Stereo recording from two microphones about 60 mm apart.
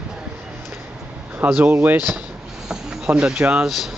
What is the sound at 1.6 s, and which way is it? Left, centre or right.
Speech, right.